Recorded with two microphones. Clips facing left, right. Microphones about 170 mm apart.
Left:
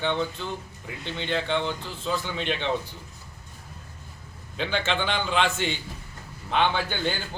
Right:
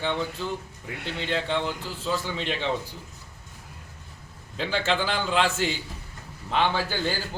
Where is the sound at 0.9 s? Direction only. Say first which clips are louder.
Right 1 dB; 70° right (ahead or behind).